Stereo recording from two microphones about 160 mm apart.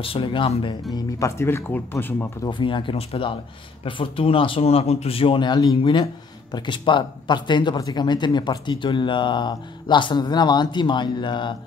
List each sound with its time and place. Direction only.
0.0 s speech: 35° left (ahead or behind)
0.9 s speech: 20° left (ahead or behind)
2.4 s speech: 30° left (ahead or behind)